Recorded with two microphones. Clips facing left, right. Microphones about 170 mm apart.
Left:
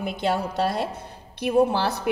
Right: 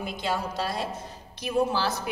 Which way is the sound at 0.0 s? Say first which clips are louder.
Left 5 dB; 60° left (ahead or behind).